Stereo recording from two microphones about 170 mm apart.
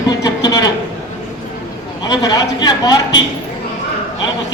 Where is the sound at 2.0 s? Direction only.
25° left (ahead or behind).